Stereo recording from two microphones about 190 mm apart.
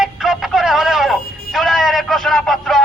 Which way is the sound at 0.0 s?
Centre (ahead or behind).